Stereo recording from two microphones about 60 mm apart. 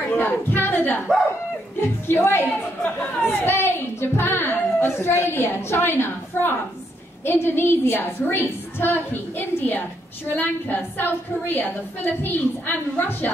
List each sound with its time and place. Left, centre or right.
0.1 s a woman's voice: left